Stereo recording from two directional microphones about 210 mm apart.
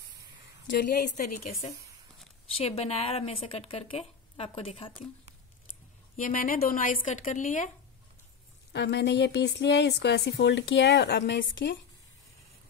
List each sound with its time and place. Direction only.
0.7 s speech: 40° left (ahead or behind)
2.5 s a woman's voice: 30° left (ahead or behind)
6.1 s speech: 40° left (ahead or behind)
8.7 s a woman's voice: 55° left (ahead or behind)